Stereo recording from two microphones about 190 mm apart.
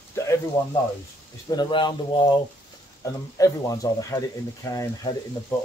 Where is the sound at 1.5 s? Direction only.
25° left (ahead or behind).